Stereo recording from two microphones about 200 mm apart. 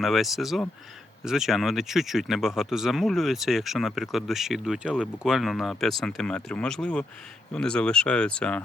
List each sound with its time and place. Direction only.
0.0 s speech: centre (ahead or behind)